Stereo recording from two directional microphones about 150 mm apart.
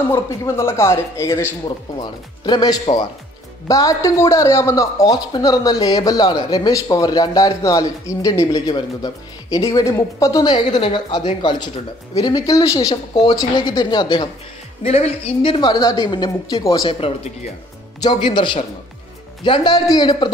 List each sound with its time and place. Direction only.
0.1 s speech: 15° left (ahead or behind)
14.8 s speech: 45° left (ahead or behind); by 16.9 s 25° left (ahead or behind)
18.0 s speech: 30° left (ahead or behind)